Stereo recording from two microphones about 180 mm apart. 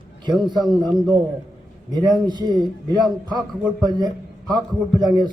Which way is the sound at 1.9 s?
25° right (ahead or behind).